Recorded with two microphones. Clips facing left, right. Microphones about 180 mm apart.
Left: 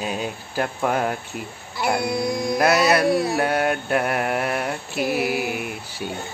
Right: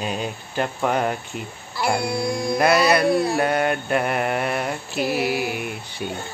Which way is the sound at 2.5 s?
Centre (ahead or behind).